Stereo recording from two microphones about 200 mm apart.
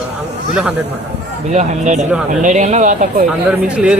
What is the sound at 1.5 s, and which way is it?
Speech, 35° right (ahead or behind).